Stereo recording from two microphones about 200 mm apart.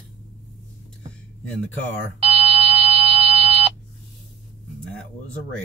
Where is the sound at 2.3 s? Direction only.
30° right (ahead or behind).